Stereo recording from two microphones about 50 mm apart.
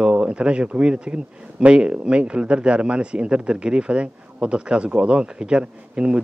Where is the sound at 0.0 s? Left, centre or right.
Centre.